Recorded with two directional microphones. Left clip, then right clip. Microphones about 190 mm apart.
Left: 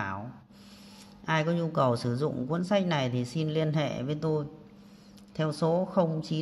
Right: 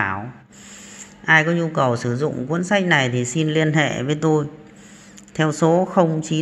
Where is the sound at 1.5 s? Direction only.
15° left (ahead or behind).